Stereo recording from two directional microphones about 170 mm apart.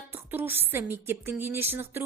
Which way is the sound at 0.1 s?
10° right (ahead or behind).